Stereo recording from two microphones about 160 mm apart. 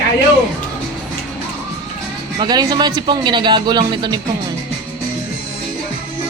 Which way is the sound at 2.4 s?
25° right (ahead or behind).